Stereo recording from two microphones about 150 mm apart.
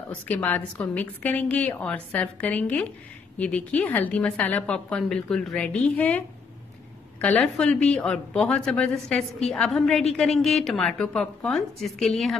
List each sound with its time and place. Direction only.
0.1 s a woman's voice: 10° left (ahead or behind)